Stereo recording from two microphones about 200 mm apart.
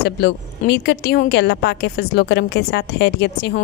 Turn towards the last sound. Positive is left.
turn(degrees=60)  # may be behind; listen again after turning